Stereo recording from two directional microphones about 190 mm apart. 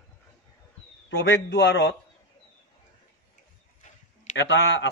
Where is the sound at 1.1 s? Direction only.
90° left.